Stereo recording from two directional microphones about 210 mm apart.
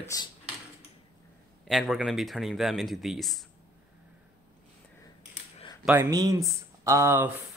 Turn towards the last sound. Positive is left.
turn(degrees=-10)  # may be behind; listen again after turning